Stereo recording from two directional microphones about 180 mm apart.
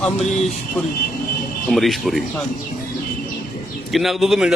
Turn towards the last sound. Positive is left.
turn(degrees=0)  # may be behind; listen again after turning